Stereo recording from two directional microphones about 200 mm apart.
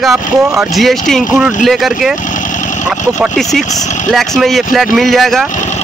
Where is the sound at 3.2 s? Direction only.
Centre (ahead or behind).